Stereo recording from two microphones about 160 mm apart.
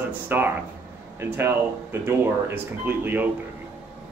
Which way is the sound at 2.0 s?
15° right (ahead or behind).